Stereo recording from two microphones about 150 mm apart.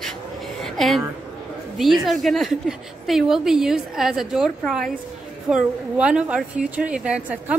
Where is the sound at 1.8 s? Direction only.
Centre (ahead or behind).